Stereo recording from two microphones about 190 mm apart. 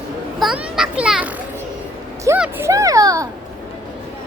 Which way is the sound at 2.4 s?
10° right (ahead or behind).